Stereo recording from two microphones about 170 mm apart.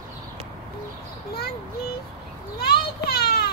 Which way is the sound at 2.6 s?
65° left (ahead or behind).